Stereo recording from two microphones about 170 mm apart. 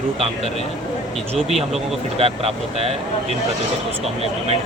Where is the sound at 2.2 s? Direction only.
35° right (ahead or behind).